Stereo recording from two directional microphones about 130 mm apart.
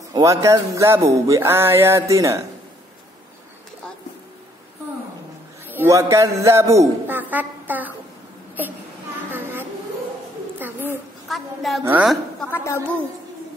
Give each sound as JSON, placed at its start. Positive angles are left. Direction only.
{"t": 0.1, "sound": "music", "side_deg": -25}
{"t": 5.7, "sound": "a man's voice", "side_deg": -20}
{"t": 9.3, "sound": "a sound", "side_deg": -15}
{"t": 11.2, "sound": "a woman's voice", "side_deg": 0}
{"t": 12.4, "sound": "a woman's voice", "side_deg": 15}